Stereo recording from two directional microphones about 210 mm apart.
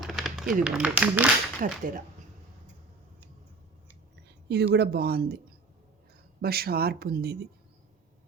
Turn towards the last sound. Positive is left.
turn(degrees=-50)  # may be behind; listen again after turning